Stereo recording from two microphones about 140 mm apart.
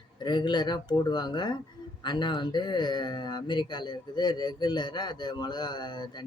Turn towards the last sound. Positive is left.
turn(degrees=30)  # may be behind; listen again after turning